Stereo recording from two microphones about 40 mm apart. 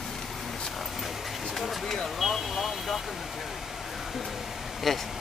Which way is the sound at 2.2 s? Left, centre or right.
Centre.